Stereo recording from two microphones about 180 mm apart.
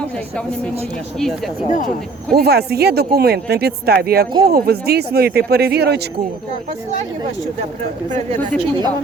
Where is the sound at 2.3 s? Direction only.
60° right (ahead or behind).